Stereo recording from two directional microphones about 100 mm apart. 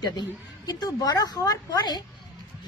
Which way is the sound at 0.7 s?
40° left (ahead or behind).